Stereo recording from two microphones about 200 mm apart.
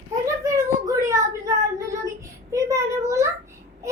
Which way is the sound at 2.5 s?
15° right (ahead or behind).